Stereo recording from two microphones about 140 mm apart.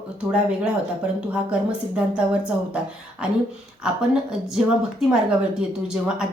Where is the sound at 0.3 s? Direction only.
5° right (ahead or behind).